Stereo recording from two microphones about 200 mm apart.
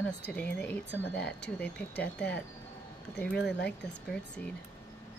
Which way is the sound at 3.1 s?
5° left (ahead or behind).